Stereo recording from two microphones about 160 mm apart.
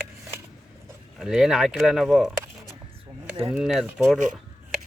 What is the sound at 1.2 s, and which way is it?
Speech, centre (ahead or behind).